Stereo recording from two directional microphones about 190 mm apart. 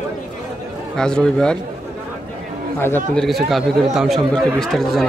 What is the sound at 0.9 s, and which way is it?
Speech, 5° left (ahead or behind).